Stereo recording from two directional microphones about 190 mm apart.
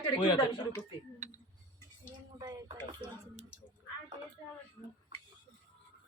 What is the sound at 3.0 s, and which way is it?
Speech, 35° right (ahead or behind).